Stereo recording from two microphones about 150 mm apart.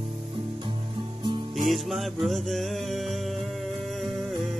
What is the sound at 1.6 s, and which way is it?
Music, centre (ahead or behind).